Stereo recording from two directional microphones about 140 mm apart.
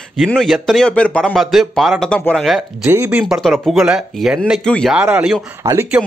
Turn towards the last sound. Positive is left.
turn(degrees=-20)  # may be behind; listen again after turning